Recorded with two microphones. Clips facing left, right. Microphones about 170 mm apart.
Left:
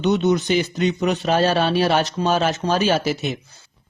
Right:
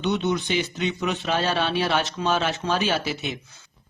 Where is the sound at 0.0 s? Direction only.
40° left (ahead or behind).